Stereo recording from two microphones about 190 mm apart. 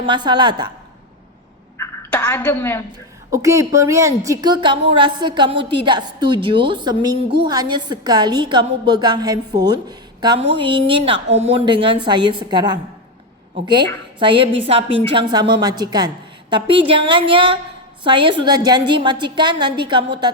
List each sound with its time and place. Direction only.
0.0 s a woman's voice: 25° right (ahead or behind)
1.8 s a sound: 10° left (ahead or behind)
3.3 s a woman's voice: 15° right (ahead or behind)